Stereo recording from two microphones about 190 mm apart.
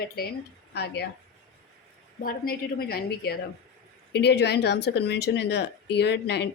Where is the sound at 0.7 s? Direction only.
60° left (ahead or behind).